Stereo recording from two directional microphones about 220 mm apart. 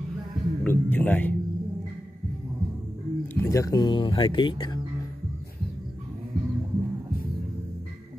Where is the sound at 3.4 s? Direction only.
15° left (ahead or behind).